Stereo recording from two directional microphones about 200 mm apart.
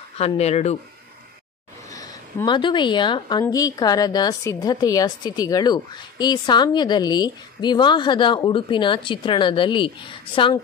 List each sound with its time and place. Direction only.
0.2 s speech: 30° left (ahead or behind)
1.9 s speech: 20° left (ahead or behind)